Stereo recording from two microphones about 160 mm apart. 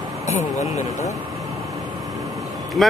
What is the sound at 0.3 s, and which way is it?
Speech, 50° left (ahead or behind).